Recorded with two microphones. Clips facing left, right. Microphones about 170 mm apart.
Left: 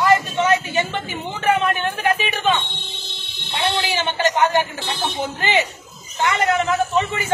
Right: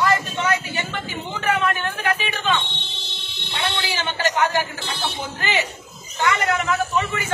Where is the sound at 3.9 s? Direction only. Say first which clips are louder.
Left 1 dB; 20° left (ahead or behind).